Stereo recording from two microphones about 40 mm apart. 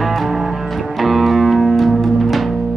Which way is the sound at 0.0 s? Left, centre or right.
Centre.